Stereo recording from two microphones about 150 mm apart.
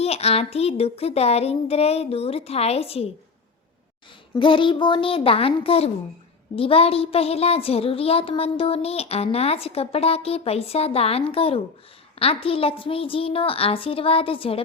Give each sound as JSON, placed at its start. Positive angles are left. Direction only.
{"t": 0.0, "sound": "speech", "side_deg": 45}
{"t": 4.4, "sound": "speech", "side_deg": 35}